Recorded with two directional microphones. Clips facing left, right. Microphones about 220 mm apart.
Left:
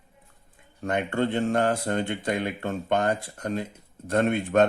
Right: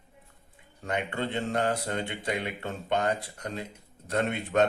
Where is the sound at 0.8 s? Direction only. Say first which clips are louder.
Left 6 dB; 50° left (ahead or behind).